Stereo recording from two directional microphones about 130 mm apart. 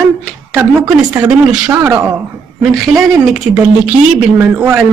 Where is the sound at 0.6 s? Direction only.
15° right (ahead or behind).